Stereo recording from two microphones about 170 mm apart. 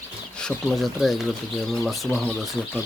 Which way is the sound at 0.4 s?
Centre (ahead or behind).